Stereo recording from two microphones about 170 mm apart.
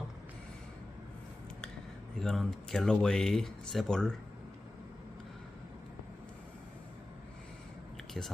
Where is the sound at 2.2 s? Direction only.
Centre (ahead or behind).